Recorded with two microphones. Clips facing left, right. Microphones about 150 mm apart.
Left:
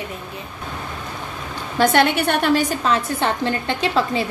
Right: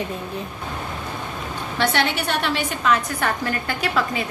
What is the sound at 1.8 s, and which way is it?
A woman's voice, 45° left (ahead or behind).